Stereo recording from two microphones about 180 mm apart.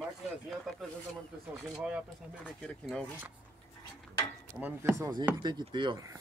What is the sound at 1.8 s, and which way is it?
Speech, 5° right (ahead or behind).